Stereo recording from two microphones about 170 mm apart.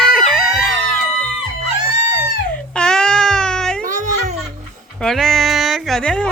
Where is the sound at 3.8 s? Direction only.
45° right (ahead or behind).